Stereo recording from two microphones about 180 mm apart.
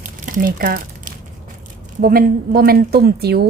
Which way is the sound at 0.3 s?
50° right (ahead or behind).